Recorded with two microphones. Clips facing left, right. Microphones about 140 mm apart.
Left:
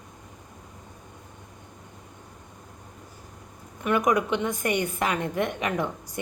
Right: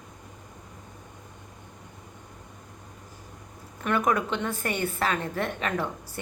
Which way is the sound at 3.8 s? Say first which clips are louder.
Left 2 dB; 10° left (ahead or behind).